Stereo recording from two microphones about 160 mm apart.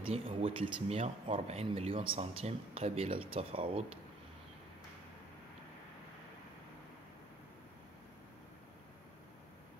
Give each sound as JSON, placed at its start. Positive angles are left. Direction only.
{"t": 0.0, "sound": "speech", "side_deg": -35}